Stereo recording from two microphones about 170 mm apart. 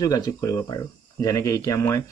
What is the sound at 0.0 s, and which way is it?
Speech, 20° left (ahead or behind).